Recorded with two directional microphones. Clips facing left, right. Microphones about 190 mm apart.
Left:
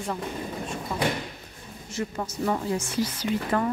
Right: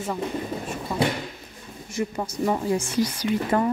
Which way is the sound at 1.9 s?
15° right (ahead or behind).